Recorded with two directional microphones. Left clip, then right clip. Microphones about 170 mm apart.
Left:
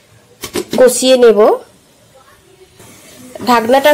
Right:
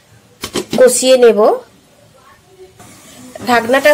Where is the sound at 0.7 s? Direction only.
10° left (ahead or behind).